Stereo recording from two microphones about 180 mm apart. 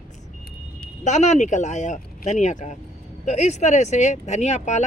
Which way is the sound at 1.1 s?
40° left (ahead or behind).